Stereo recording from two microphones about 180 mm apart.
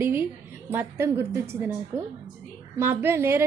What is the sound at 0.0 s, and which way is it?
A woman's voice, 10° right (ahead or behind).